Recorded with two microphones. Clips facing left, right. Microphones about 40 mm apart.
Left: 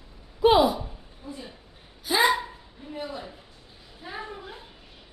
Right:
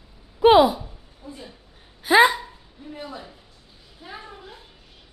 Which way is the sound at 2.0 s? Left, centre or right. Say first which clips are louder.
Right 8 dB; right.